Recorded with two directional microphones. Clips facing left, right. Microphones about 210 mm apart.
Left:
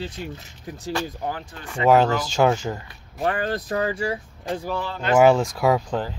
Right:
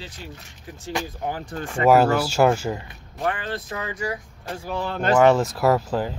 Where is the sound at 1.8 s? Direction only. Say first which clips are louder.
Right 1 dB; 10° right (ahead or behind).